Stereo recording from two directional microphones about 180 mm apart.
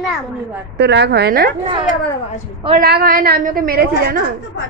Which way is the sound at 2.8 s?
55° right (ahead or behind).